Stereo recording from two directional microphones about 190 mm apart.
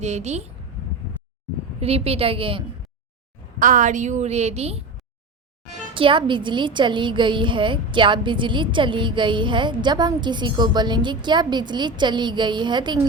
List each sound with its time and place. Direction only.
0.0 s a woman's voice: 35° right (ahead or behind)
1.8 s a woman's voice: 30° right (ahead or behind)
3.6 s a woman's voice: 45° right (ahead or behind)
5.9 s a woman's voice: 25° right (ahead or behind)